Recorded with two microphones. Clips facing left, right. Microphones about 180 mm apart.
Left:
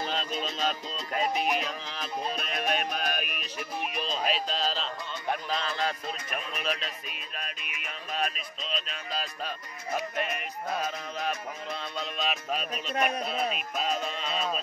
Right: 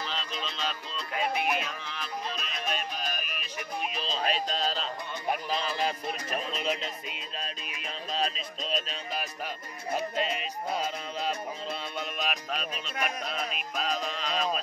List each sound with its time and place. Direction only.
0.0 s speech: 45° left (ahead or behind)
2.3 s music: 60° left (ahead or behind)
3.5 s music: 15° right (ahead or behind)
4.1 s music: 5° left (ahead or behind); by 6.1 s 10° right (ahead or behind)
6.3 s music: 25° right (ahead or behind)
8.6 s music: 35° right (ahead or behind); by 12.6 s centre (ahead or behind)
12.9 s speech: 35° left (ahead or behind)
13.6 s music: centre (ahead or behind)